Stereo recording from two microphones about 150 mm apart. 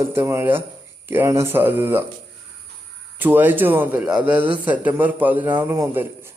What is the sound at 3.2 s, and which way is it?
Speech, 15° right (ahead or behind).